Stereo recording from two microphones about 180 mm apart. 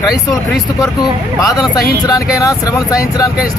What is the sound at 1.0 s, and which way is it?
Speech, 20° left (ahead or behind).